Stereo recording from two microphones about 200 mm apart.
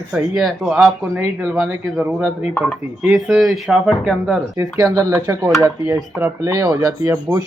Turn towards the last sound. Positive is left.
turn(degrees=-15)  # may be behind; listen again after turning